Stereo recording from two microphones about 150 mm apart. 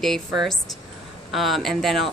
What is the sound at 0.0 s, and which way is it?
Speech, centre (ahead or behind).